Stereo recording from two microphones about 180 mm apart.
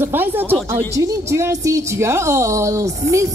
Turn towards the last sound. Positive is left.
turn(degrees=-15)  # may be behind; listen again after turning